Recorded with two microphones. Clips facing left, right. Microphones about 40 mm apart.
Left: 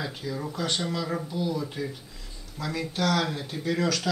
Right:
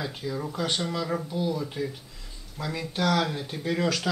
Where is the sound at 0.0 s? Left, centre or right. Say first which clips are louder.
Right 1 dB; centre.